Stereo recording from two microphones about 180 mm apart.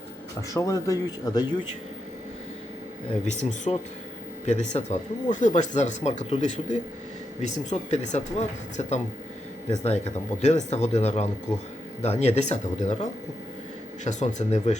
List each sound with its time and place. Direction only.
0.5 s speech: 20° left (ahead or behind)
3.7 s speech: 35° left (ahead or behind)